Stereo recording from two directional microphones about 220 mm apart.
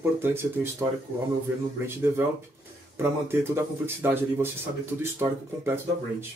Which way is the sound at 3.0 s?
10° right (ahead or behind).